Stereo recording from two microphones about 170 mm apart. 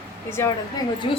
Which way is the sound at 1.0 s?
30° left (ahead or behind).